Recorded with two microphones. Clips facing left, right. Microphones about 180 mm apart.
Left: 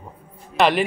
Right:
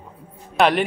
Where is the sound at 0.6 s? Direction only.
Centre (ahead or behind).